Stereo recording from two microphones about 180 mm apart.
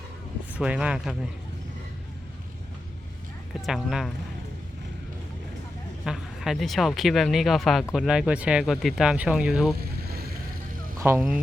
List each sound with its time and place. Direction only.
0.5 s speech: 5° right (ahead or behind)
3.5 s speech: centre (ahead or behind)
6.1 s speech: centre (ahead or behind)
9.7 s vehicle: 60° right (ahead or behind)
10.9 s speech: 15° right (ahead or behind)